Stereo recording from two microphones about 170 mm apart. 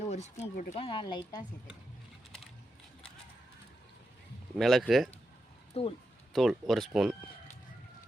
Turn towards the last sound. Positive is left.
turn(degrees=0)  # may be behind; listen again after turning